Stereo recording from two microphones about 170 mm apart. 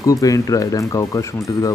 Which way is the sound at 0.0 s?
20° left (ahead or behind).